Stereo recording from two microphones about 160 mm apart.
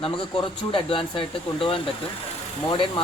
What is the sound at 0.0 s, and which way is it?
Speech, 30° left (ahead or behind).